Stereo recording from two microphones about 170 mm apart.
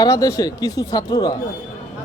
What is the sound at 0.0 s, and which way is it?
Speech, 20° left (ahead or behind).